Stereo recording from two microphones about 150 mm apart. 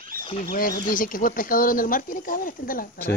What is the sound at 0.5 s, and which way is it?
Speech, 70° left (ahead or behind).